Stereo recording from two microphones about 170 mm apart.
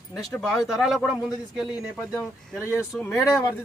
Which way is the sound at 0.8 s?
Centre (ahead or behind).